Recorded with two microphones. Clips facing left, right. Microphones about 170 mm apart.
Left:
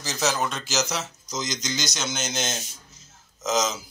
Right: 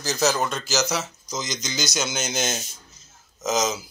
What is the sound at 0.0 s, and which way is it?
Speech, centre (ahead or behind).